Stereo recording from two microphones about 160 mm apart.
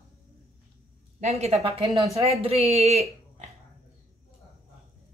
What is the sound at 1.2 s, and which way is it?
Speech, 45° right (ahead or behind).